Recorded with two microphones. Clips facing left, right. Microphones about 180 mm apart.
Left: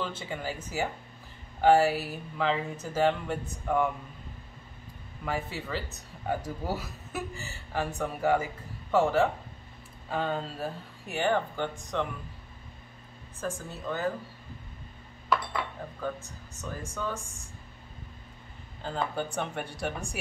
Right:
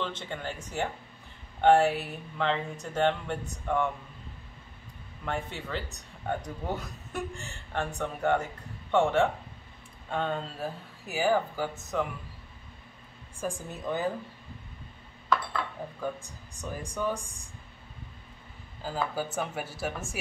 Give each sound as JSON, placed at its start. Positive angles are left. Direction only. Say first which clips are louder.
{"t": 0.0, "sound": "speech", "louder": "even", "side_deg": 5}
{"t": 5.2, "sound": "speech", "louder": "left 1 dB", "side_deg": 5}
{"t": 13.4, "sound": "speech", "louder": "right 1 dB", "side_deg": -15}
{"t": 16.0, "sound": "speech", "louder": "left 1 dB", "side_deg": -15}
{"t": 18.8, "sound": "speech", "louder": "even", "side_deg": -5}